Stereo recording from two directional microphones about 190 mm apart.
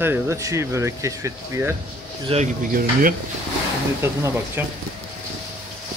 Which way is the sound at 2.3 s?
30° right (ahead or behind).